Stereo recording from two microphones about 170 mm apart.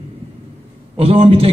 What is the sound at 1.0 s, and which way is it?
Speech, 35° right (ahead or behind).